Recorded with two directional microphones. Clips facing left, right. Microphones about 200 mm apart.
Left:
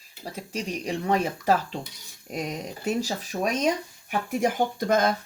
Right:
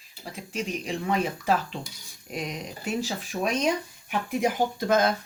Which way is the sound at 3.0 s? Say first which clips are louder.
Left 1 dB; 40° left (ahead or behind).